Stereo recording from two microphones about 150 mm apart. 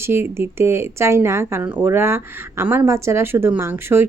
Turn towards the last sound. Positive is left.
turn(degrees=-15)  # may be behind; listen again after turning